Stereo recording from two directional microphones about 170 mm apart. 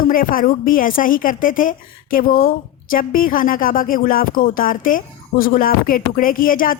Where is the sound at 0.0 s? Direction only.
55° left (ahead or behind).